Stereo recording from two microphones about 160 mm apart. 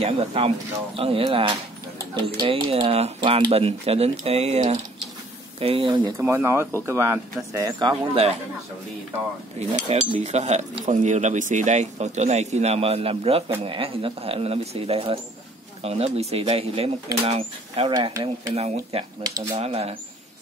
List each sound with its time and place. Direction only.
0.0 s speech: 40° right (ahead or behind)
6.1 s speech: 15° right (ahead or behind)
8.1 s speech: 40° right (ahead or behind)
9.6 s speech: 45° right (ahead or behind)
17.9 s speech: 30° right (ahead or behind)
18.5 s speech: 40° right (ahead or behind)
19.2 s speech: 25° right (ahead or behind)
19.6 s speech: 40° right (ahead or behind)